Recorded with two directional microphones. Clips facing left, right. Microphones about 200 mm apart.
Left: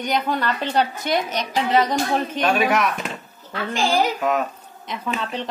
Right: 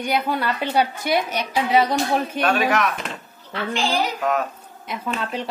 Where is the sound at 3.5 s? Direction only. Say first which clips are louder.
Left 1 dB; 45° left (ahead or behind).